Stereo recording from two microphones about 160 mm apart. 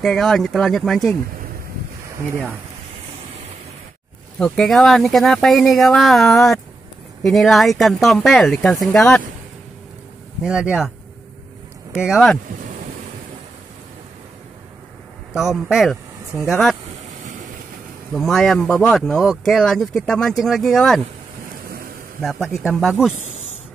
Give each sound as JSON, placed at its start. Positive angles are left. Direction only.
{"t": 0.0, "sound": "speech", "side_deg": 0}
{"t": 4.4, "sound": "speech", "side_deg": 5}
{"t": 10.4, "sound": "speech", "side_deg": -5}
{"t": 12.0, "sound": "speech", "side_deg": 0}
{"t": 15.3, "sound": "speech", "side_deg": 0}
{"t": 18.1, "sound": "speech", "side_deg": 0}
{"t": 21.6, "sound": "a sound", "side_deg": -65}
{"t": 22.2, "sound": "speech", "side_deg": -5}